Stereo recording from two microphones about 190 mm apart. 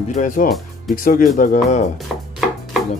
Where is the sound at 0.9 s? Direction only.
45° left (ahead or behind).